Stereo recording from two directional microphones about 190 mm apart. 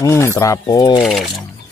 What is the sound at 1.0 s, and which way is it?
Speech, centre (ahead or behind).